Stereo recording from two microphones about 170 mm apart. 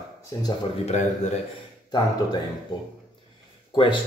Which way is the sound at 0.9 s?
45° left (ahead or behind).